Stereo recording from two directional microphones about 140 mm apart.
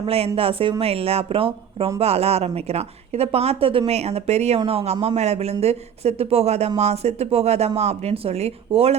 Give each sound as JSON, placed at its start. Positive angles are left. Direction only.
{"t": 0.0, "sound": "a woman's voice", "side_deg": -45}